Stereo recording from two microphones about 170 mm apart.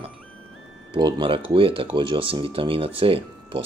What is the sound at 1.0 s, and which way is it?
Speech, 25° right (ahead or behind).